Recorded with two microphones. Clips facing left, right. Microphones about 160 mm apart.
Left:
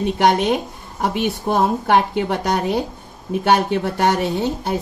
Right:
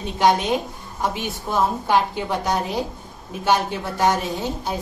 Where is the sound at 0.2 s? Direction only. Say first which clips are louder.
Left 1 dB; 60° left (ahead or behind).